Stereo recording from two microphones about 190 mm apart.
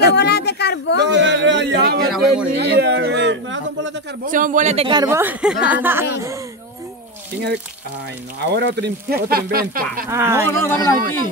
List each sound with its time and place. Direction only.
0.1 s speech: 60° left (ahead or behind)
1.1 s music: 70° right (ahead or behind)
2.1 s a man's voice: 5° right (ahead or behind)
2.5 s speech: 60° right (ahead or behind)
4.3 s speech: 45° right (ahead or behind); by 5.0 s 30° right (ahead or behind)
5.0 s speech: 10° right (ahead or behind)
8.5 s speech: 65° right (ahead or behind)
10.0 s speech: 15° right (ahead or behind)
10.5 s speech: 10° left (ahead or behind)